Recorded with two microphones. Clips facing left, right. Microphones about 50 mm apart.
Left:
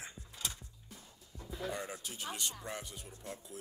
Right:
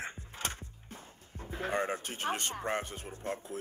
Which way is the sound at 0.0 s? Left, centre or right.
Right.